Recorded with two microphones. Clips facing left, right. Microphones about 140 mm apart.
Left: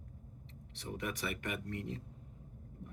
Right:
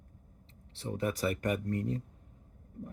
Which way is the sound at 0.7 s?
30° right (ahead or behind).